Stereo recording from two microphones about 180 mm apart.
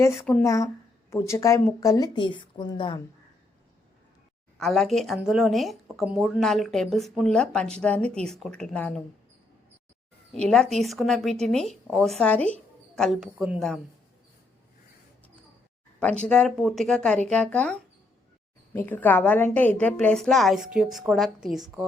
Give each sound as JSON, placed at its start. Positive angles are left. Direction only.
{"t": 0.0, "sound": "a woman's voice", "side_deg": 10}
{"t": 4.5, "sound": "a woman's voice", "side_deg": 0}
{"t": 10.5, "sound": "a woman's voice", "side_deg": 0}
{"t": 16.2, "sound": "a woman's voice", "side_deg": 5}